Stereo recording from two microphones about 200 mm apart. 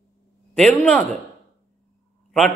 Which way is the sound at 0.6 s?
5° left (ahead or behind).